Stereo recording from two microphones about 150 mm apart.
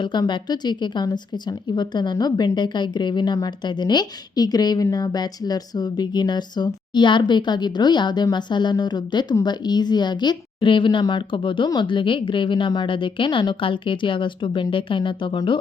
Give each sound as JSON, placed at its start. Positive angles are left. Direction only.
{"t": 0.0, "sound": "speech", "side_deg": 30}